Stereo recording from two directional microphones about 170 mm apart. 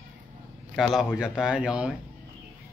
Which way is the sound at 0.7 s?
Centre (ahead or behind).